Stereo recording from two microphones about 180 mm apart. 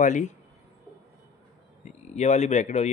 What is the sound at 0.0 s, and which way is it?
Speech, 45° left (ahead or behind).